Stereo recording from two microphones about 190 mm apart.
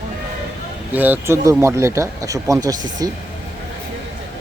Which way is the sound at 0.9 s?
10° right (ahead or behind).